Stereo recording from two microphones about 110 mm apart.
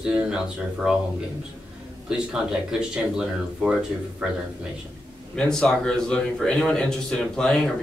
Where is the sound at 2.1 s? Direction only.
5° right (ahead or behind).